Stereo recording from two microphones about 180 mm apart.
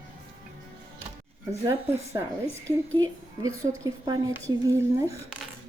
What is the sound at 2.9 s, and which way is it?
A woman's voice, 20° right (ahead or behind).